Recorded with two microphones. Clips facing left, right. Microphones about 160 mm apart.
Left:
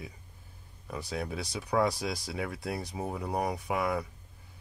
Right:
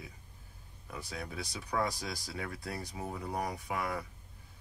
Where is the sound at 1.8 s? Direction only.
75° left (ahead or behind).